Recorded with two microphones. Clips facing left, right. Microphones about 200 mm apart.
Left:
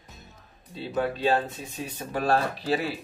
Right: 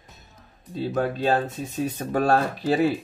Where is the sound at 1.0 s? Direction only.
45° right (ahead or behind).